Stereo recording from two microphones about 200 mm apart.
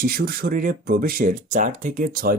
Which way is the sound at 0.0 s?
45° right (ahead or behind).